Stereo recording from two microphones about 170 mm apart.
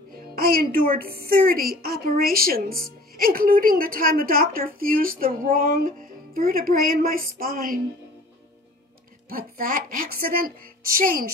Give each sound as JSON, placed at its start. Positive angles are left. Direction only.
{"t": 0.4, "sound": "a woman's voice", "side_deg": -60}
{"t": 9.3, "sound": "a woman's voice", "side_deg": -60}